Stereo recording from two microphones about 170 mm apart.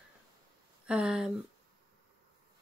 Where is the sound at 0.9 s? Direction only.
5° right (ahead or behind).